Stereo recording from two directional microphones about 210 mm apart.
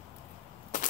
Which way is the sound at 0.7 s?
35° left (ahead or behind).